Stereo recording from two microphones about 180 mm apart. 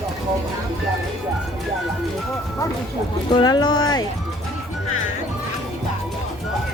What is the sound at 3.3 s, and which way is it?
Speech, 25° left (ahead or behind).